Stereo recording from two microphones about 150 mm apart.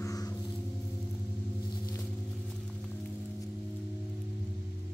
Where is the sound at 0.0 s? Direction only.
20° left (ahead or behind).